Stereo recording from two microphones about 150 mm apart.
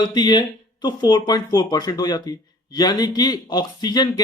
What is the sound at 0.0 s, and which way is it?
Speech, 30° left (ahead or behind).